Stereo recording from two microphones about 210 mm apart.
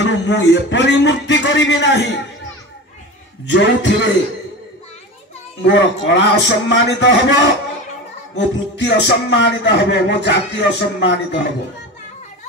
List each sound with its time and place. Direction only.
0.0 s music: 60° left (ahead or behind)
3.4 s music: 55° left (ahead or behind)
5.6 s music: 60° left (ahead or behind)